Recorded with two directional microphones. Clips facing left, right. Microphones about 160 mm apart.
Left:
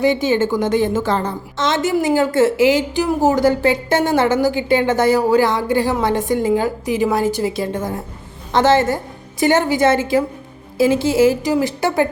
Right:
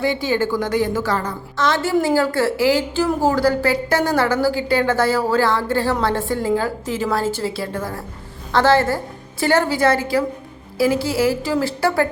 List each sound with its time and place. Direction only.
0.0 s a woman's voice: 20° left (ahead or behind)